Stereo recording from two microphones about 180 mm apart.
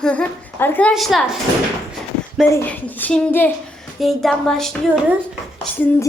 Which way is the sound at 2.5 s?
10° left (ahead or behind).